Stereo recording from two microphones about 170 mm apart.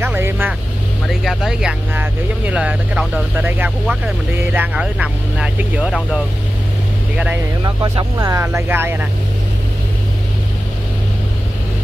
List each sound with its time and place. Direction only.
0.0 s vehicle: 10° right (ahead or behind)
1.0 s speech: centre (ahead or behind)
7.6 s speech: 25° right (ahead or behind)